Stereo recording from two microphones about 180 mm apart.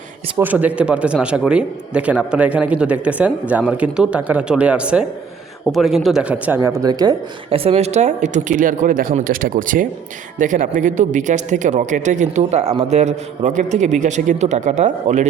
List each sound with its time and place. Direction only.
0.3 s speech: 10° right (ahead or behind)
7.6 s speech: 35° right (ahead or behind)